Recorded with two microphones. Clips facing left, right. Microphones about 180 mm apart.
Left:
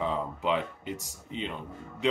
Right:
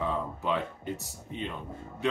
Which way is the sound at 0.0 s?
15° left (ahead or behind).